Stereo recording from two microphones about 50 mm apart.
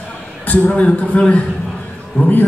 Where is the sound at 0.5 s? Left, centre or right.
Left.